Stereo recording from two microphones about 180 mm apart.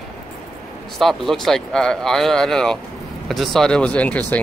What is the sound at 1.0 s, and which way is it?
Speech, centre (ahead or behind).